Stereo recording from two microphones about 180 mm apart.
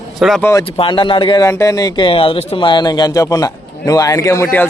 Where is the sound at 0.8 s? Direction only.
30° left (ahead or behind).